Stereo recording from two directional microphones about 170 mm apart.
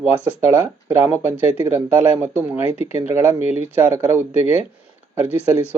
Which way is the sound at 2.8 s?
40° left (ahead or behind).